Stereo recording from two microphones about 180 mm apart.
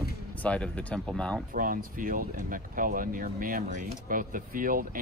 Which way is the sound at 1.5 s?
50° right (ahead or behind).